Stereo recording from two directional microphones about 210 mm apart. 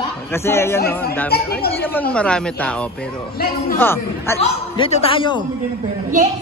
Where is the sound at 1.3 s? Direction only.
50° left (ahead or behind).